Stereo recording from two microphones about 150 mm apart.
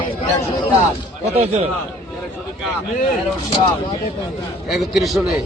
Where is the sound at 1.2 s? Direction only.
45° right (ahead or behind).